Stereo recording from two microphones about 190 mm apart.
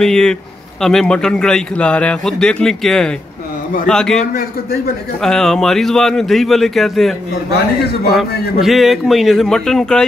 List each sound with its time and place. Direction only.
0.0 s a man's voice: 5° left (ahead or behind)
4.3 s a man's voice: 55° left (ahead or behind)
5.2 s a man's voice: 5° left (ahead or behind)
8.5 s a man's voice: centre (ahead or behind)